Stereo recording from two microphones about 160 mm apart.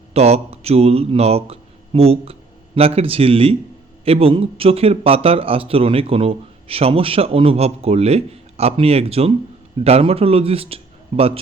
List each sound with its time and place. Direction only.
0.1 s speech: 40° right (ahead or behind)